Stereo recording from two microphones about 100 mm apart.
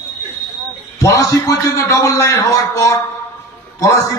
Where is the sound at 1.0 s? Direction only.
35° left (ahead or behind).